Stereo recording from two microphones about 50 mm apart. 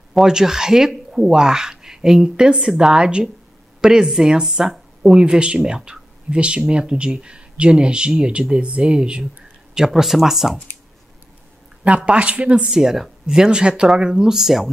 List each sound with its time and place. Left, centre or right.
0.1 s speech: centre
5.2 s speech: right; by 10.6 s centre
12.0 s speech: right
12.6 s speech: centre